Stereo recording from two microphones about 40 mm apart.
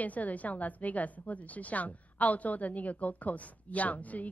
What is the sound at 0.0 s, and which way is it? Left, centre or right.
A woman's voice, left.